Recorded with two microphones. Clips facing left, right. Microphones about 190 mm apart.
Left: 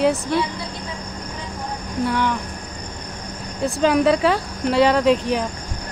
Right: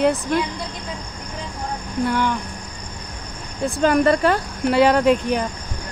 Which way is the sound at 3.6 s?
Centre (ahead or behind).